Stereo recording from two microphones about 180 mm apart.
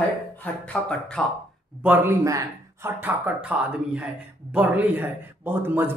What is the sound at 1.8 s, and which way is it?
Speech, 10° right (ahead or behind).